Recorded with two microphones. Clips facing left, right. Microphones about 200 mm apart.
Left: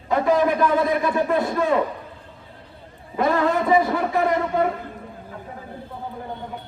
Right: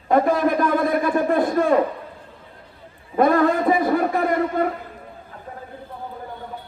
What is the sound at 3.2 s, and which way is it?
A man's voice, 50° right (ahead or behind).